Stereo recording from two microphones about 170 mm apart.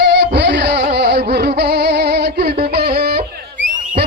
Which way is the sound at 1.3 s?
75° right (ahead or behind).